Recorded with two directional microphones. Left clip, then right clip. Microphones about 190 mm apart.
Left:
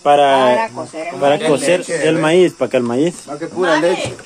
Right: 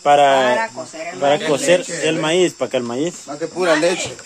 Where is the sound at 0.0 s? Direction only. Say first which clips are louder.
Left 2 dB; 15° right (ahead or behind).